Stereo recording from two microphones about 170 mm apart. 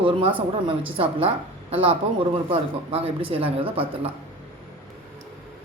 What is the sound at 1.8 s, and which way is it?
Speech, 30° right (ahead or behind).